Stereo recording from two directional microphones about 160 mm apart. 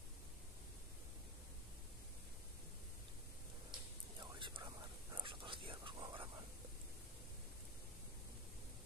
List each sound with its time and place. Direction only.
4.2 s whispering: 30° right (ahead or behind)